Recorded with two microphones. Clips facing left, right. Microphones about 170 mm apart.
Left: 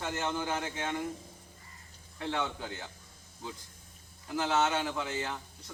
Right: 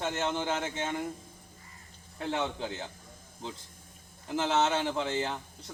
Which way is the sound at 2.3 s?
25° right (ahead or behind).